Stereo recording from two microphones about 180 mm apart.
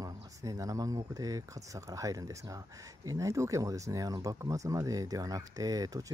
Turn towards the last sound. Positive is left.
turn(degrees=-20)  # may be behind; listen again after turning